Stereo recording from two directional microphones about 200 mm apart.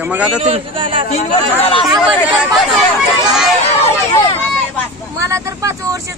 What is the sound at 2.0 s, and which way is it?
Speech, 5° right (ahead or behind).